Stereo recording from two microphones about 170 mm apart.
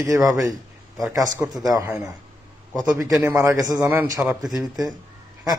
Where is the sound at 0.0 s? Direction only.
20° right (ahead or behind).